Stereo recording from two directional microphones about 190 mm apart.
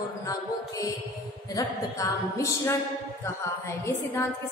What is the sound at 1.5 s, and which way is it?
Music, 15° left (ahead or behind).